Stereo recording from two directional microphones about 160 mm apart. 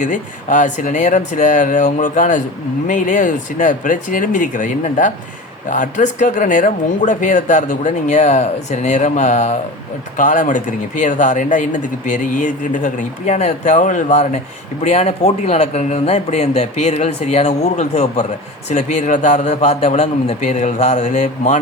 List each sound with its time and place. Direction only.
0.0 s speech: 50° left (ahead or behind)